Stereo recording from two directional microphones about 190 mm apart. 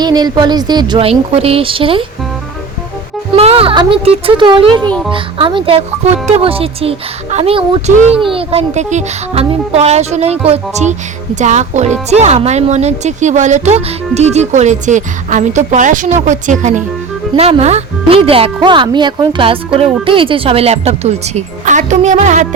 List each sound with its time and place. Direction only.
0.0 s speech: 20° right (ahead or behind)
3.3 s speech: 30° right (ahead or behind)